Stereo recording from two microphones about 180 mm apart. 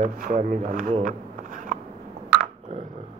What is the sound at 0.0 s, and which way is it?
Speech, 45° right (ahead or behind).